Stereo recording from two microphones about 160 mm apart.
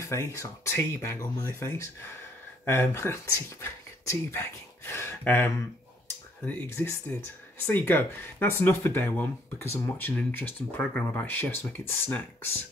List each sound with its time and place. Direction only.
0.0 s speech: 20° left (ahead or behind)